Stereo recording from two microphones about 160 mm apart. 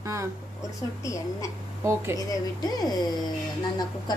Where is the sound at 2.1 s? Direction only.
25° left (ahead or behind).